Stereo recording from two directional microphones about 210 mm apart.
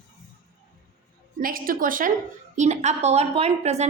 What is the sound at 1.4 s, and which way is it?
A woman's voice, 45° right (ahead or behind).